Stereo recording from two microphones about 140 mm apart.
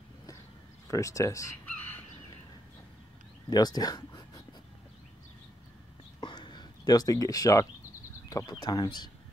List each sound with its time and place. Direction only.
0.8 s speech: 25° left (ahead or behind)
3.4 s speech: 30° left (ahead or behind)
6.2 s a sound: 35° left (ahead or behind)
8.3 s speech: 25° left (ahead or behind)